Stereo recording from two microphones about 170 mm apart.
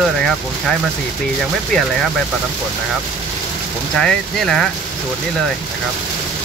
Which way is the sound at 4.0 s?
5° left (ahead or behind).